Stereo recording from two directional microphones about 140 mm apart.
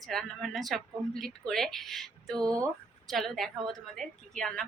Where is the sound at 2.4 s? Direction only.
25° right (ahead or behind).